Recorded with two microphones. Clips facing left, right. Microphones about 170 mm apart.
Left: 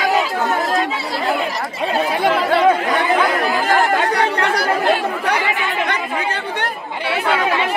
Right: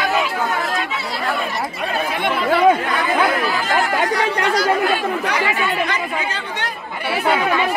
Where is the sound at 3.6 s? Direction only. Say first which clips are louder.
Left 3 dB; 65° left (ahead or behind).